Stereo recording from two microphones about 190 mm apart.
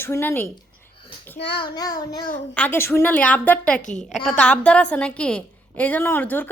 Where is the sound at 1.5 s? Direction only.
20° left (ahead or behind).